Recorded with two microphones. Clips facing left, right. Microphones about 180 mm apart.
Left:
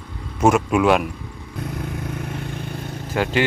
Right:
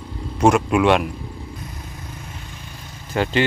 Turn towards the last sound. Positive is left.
turn(degrees=5)  # may be behind; listen again after turning